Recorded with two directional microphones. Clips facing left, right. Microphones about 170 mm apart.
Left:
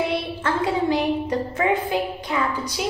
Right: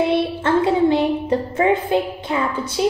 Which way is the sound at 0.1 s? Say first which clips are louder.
Right 7 dB; 25° right (ahead or behind).